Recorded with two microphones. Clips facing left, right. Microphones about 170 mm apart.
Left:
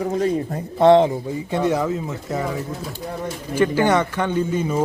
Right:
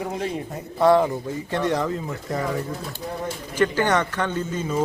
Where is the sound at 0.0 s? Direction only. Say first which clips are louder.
Left 7 dB; 40° left (ahead or behind).